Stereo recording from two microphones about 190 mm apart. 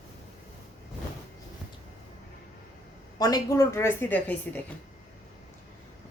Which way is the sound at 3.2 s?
20° left (ahead or behind).